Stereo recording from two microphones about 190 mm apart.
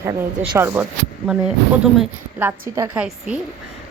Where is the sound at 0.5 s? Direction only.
10° right (ahead or behind).